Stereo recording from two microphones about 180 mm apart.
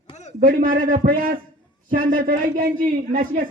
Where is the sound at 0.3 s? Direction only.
50° right (ahead or behind).